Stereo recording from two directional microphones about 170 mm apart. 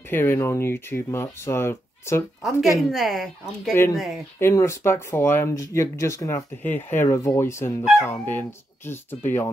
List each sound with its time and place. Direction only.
0.1 s speech: 15° left (ahead or behind)
2.8 s speech: centre (ahead or behind)
4.4 s speech: 15° left (ahead or behind)